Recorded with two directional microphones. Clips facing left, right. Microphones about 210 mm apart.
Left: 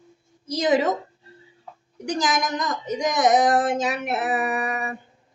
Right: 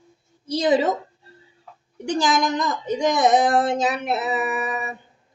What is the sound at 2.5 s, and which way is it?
Speech, 30° right (ahead or behind).